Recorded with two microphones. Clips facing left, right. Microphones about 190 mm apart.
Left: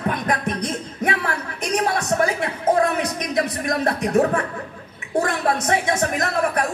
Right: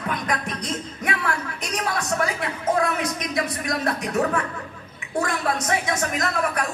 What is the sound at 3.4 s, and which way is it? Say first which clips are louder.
Speech: left 4 dB; 50° left (ahead or behind).